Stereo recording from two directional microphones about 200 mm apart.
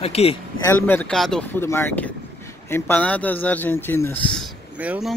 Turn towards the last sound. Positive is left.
turn(degrees=-5)  # may be behind; listen again after turning